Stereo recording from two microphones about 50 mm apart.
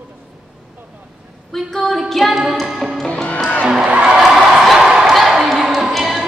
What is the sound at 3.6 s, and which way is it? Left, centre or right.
Music, centre.